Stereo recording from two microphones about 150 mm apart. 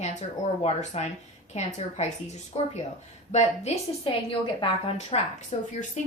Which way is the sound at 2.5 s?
45° left (ahead or behind).